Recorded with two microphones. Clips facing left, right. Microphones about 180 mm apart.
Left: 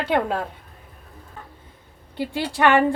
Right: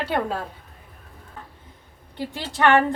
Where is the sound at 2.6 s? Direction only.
15° left (ahead or behind).